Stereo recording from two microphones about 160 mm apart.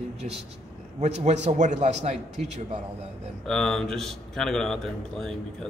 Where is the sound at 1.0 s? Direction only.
45° right (ahead or behind).